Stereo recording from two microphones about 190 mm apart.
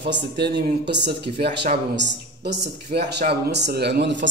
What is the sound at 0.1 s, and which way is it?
Speech, 65° right (ahead or behind).